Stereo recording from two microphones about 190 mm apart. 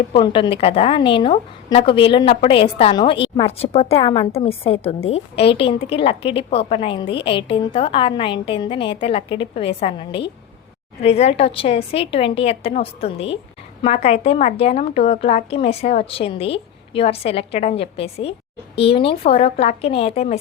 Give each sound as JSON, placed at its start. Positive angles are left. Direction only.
{"t": 0.1, "sound": "a woman's voice", "side_deg": 25}